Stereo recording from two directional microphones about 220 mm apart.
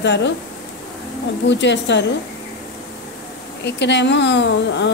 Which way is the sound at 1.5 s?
55° left (ahead or behind).